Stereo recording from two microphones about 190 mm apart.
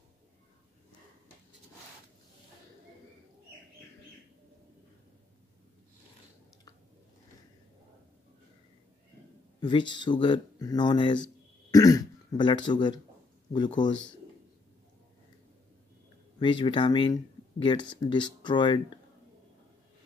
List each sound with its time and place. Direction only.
9.6 s speech: 25° left (ahead or behind)
16.3 s speech: 25° left (ahead or behind)